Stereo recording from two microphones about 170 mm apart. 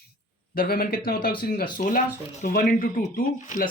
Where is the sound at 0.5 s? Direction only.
60° left (ahead or behind).